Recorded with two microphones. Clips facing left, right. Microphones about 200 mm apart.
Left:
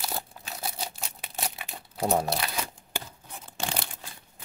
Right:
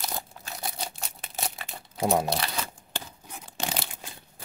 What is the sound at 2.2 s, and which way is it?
Speech, centre (ahead or behind).